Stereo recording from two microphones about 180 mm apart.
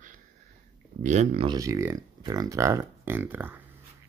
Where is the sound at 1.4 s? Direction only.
20° right (ahead or behind).